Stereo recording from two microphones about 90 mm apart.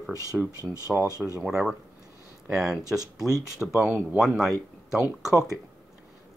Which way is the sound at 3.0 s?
40° right (ahead or behind).